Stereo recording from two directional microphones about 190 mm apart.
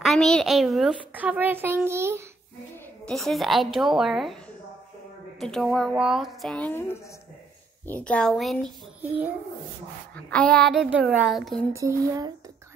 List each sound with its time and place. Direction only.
0.0 s a child's voice: centre (ahead or behind)
3.1 s a child's voice: centre (ahead or behind)
5.4 s a child's voice: centre (ahead or behind)
10.1 s a child's voice: 5° left (ahead or behind)
11.7 s speech: 15° right (ahead or behind)